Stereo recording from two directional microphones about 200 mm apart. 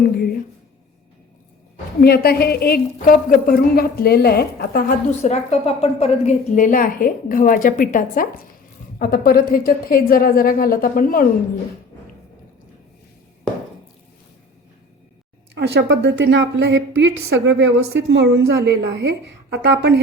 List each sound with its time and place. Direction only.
2.0 s a woman's voice: 50° left (ahead or behind)
5.2 s a woman's voice: 30° left (ahead or behind)
15.5 s a woman's voice: 55° right (ahead or behind)